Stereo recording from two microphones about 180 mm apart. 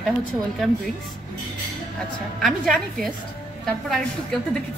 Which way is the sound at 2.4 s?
Centre (ahead or behind).